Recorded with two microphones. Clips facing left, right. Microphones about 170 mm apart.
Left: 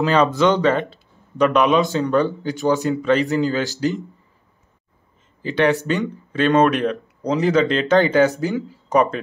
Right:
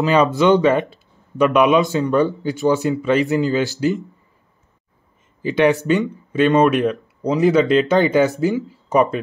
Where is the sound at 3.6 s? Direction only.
40° left (ahead or behind).